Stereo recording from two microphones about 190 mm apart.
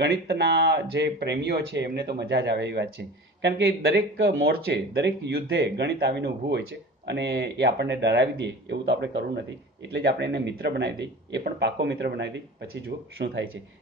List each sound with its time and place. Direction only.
0.0 s speech: 60° right (ahead or behind)